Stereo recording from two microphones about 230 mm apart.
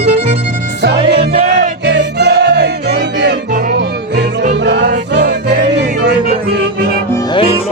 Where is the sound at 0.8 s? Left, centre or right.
Right.